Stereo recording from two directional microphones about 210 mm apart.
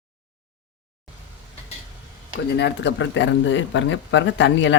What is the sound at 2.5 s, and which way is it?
Speech, 55° left (ahead or behind).